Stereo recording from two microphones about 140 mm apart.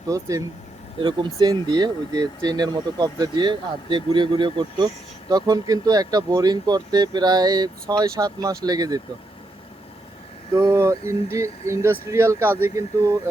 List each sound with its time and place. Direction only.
0.1 s speech: 20° right (ahead or behind)
10.5 s speech: 25° right (ahead or behind)